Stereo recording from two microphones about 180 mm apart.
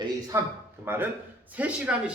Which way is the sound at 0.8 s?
10° right (ahead or behind).